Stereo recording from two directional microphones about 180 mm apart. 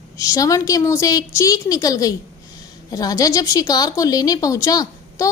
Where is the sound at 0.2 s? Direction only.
20° left (ahead or behind).